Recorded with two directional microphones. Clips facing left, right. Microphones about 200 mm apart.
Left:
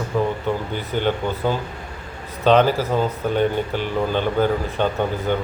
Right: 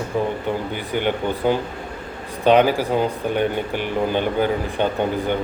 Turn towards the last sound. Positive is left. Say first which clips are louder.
# right 1 dB
turn(degrees=-15)  # may be behind; listen again after turning